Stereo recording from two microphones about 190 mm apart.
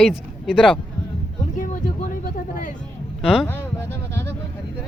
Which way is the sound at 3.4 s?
10° left (ahead or behind).